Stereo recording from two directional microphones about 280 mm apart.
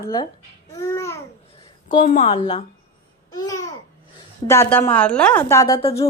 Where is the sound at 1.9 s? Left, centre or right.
Left.